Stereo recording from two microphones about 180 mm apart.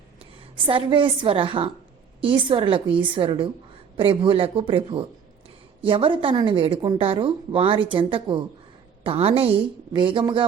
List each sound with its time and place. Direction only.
0.2 s a woman's voice: 30° right (ahead or behind)